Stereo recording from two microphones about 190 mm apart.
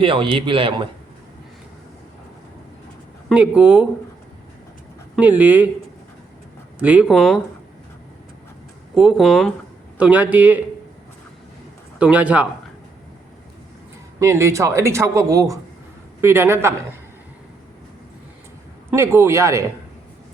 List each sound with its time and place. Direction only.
0.0 s speech: 25° right (ahead or behind)
3.2 s speech: 5° right (ahead or behind)
5.1 s speech: 5° right (ahead or behind)
6.8 s speech: 5° right (ahead or behind)
9.0 s speech: 5° right (ahead or behind)
11.9 s speech: 5° right (ahead or behind)
14.2 s speech: 15° right (ahead or behind)
18.9 s speech: 15° right (ahead or behind)